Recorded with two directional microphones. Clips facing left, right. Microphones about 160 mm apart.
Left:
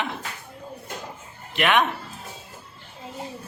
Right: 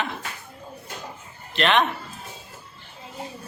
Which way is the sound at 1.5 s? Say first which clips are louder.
Even; 10° left (ahead or behind).